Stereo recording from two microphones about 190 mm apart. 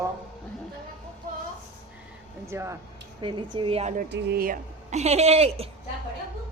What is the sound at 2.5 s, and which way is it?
Speech, 15° right (ahead or behind).